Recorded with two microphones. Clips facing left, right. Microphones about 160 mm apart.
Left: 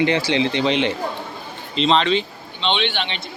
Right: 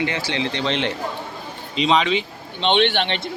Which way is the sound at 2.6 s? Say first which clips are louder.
Right 4 dB; 55° right (ahead or behind).